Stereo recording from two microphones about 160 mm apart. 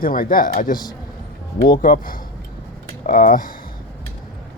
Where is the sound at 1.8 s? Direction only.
60° left (ahead or behind).